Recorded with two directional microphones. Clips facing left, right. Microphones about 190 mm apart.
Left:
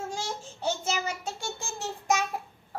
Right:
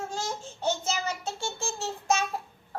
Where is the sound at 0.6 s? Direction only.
10° left (ahead or behind).